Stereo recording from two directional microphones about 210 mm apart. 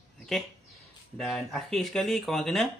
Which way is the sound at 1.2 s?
Centre (ahead or behind).